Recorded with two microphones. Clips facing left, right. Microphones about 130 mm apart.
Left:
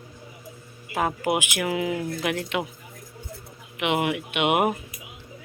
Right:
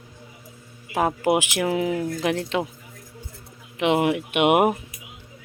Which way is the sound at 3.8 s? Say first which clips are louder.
Right 4 dB; 35° right (ahead or behind).